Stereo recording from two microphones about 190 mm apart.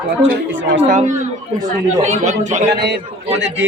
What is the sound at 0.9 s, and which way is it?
A man's voice, 40° right (ahead or behind).